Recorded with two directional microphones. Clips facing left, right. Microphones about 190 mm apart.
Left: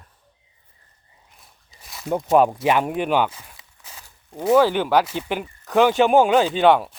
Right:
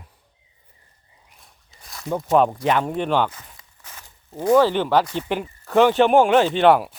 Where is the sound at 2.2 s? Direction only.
10° left (ahead or behind).